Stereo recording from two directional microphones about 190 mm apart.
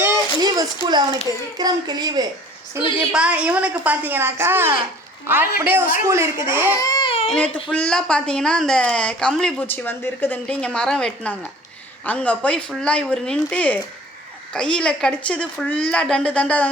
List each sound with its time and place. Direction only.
0.0 s a sound: 20° right (ahead or behind)
1.5 s speech: 20° right (ahead or behind)
3.1 s a woman's voice: 5° right (ahead or behind)
6.8 s baby cry: 25° left (ahead or behind)
7.3 s a woman's voice: 5° left (ahead or behind)